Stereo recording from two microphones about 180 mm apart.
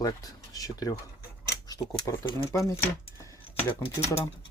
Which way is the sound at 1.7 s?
20° left (ahead or behind).